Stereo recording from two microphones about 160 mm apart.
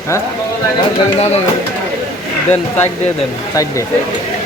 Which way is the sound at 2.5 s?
10° left (ahead or behind).